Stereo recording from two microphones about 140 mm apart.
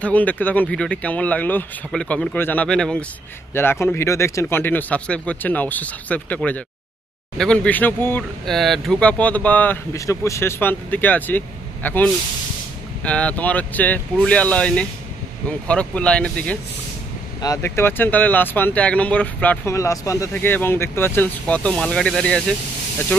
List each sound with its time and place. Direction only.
0.0 s speech: 10° left (ahead or behind)
3.5 s speech: 15° left (ahead or behind)
8.2 s speech: centre (ahead or behind)
9.9 s speech: 20° left (ahead or behind)
17.4 s speech: 20° left (ahead or behind)
19.7 s speech: 25° left (ahead or behind); by 22.4 s 5° left (ahead or behind)